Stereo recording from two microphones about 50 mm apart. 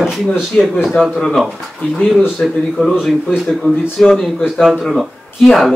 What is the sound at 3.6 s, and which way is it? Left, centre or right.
Speech, left.